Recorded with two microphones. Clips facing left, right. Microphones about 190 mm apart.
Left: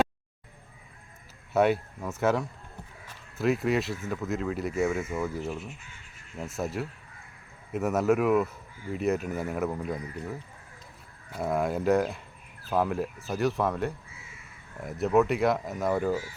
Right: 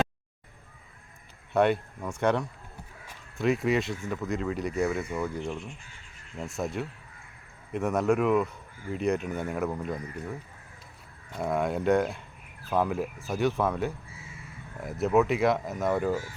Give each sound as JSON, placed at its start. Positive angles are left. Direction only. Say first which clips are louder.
{"t": 1.5, "sound": "speech", "louder": "even", "side_deg": 5}